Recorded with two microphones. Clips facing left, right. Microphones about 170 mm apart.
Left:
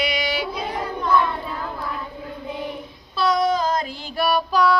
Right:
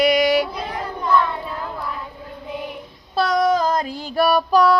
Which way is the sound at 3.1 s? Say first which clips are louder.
Right 2 dB; 45° right (ahead or behind).